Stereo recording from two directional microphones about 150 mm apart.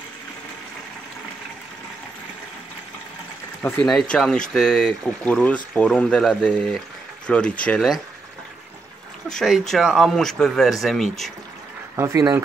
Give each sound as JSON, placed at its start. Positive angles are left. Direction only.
{"t": 3.8, "sound": "speech", "side_deg": 5}
{"t": 9.4, "sound": "speech", "side_deg": 0}
{"t": 12.0, "sound": "speech", "side_deg": -20}